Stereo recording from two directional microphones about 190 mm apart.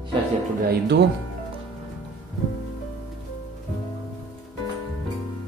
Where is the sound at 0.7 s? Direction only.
60° right (ahead or behind).